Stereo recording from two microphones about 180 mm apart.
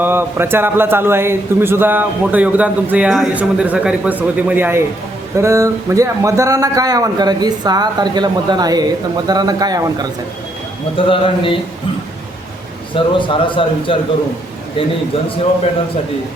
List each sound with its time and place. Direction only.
0.0 s a man's voice: 10° right (ahead or behind)
10.9 s a man's voice: 30° left (ahead or behind)
12.9 s a man's voice: 30° left (ahead or behind)